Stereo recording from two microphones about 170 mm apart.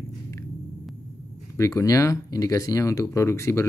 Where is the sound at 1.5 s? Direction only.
20° left (ahead or behind).